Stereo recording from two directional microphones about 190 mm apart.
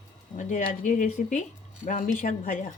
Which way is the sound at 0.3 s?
40° left (ahead or behind).